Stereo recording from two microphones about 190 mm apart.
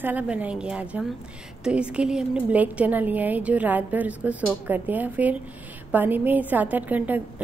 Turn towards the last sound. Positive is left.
turn(degrees=-10)  # may be behind; listen again after turning